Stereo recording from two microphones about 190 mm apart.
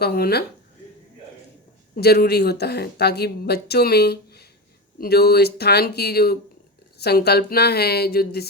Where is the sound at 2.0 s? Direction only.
55° left (ahead or behind).